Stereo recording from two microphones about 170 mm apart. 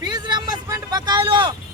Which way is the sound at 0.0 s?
25° right (ahead or behind).